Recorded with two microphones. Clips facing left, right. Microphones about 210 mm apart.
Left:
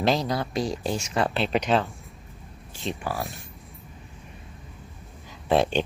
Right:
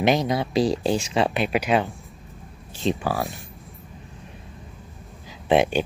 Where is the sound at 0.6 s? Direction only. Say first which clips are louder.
Right 6 dB; 30° right (ahead or behind).